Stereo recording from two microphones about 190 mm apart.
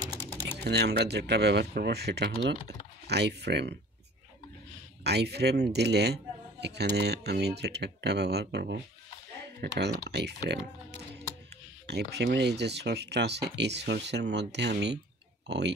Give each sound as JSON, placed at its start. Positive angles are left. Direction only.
{"t": 0.7, "sound": "speech", "side_deg": -60}
{"t": 5.0, "sound": "speech", "side_deg": -60}